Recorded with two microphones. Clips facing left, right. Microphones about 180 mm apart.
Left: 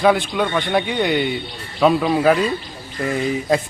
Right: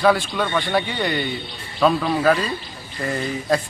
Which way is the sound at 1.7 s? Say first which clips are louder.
Left 3 dB; 10° left (ahead or behind).